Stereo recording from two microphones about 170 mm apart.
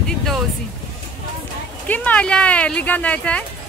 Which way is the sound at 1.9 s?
10° left (ahead or behind).